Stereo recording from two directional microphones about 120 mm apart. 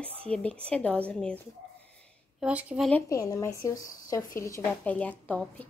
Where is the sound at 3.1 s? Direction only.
30° left (ahead or behind).